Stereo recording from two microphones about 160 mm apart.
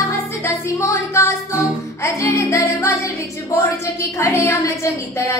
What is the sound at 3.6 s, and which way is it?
A woman's voice, 20° left (ahead or behind).